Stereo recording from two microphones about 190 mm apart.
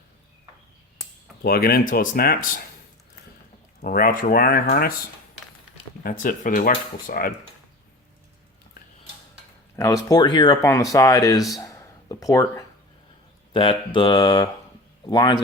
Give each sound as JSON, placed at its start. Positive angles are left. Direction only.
{"t": 1.4, "sound": "speech", "side_deg": 50}
{"t": 3.8, "sound": "speech", "side_deg": 50}
{"t": 6.0, "sound": "speech", "side_deg": 45}
{"t": 9.7, "sound": "speech", "side_deg": 15}